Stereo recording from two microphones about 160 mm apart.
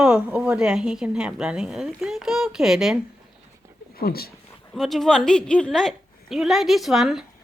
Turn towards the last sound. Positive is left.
turn(degrees=0)  # may be behind; listen again after turning